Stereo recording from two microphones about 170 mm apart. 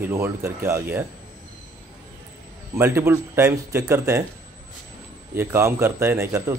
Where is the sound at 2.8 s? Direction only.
15° right (ahead or behind).